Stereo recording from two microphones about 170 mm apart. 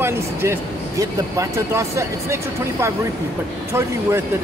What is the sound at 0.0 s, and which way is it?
Speech, 15° right (ahead or behind).